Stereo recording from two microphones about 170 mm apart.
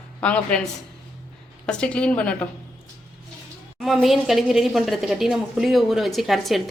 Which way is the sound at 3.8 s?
Centre (ahead or behind).